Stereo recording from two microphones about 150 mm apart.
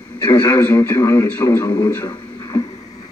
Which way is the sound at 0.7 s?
15° left (ahead or behind).